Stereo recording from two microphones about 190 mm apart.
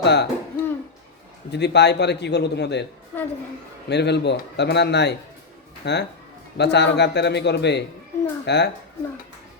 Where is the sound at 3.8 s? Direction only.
65° left (ahead or behind).